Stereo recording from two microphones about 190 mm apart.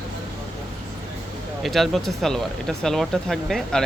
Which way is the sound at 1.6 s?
Centre (ahead or behind).